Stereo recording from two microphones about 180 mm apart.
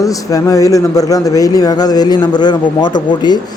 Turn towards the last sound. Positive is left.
turn(degrees=25)  # may be behind; listen again after turning